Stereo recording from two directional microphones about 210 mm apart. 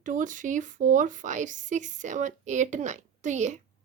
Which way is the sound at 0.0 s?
40° right (ahead or behind).